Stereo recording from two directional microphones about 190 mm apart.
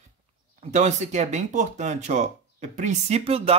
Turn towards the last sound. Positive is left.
turn(degrees=-30)  # may be behind; listen again after turning